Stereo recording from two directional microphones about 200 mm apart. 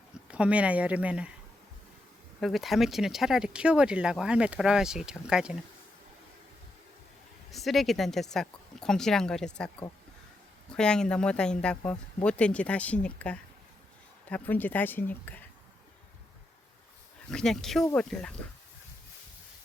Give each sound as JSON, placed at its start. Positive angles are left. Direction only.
{"t": 0.3, "sound": "speech", "side_deg": -5}
{"t": 2.4, "sound": "speech", "side_deg": 0}
{"t": 7.5, "sound": "speech", "side_deg": 0}
{"t": 17.3, "sound": "speech", "side_deg": 5}